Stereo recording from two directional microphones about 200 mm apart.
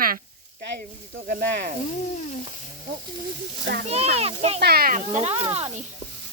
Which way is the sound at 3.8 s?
30° right (ahead or behind).